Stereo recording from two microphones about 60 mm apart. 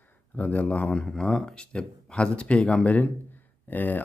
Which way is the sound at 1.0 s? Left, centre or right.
Centre.